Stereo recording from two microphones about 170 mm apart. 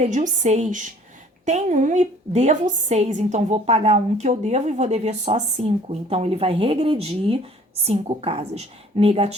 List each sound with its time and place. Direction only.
0.0 s a woman's voice: 40° right (ahead or behind)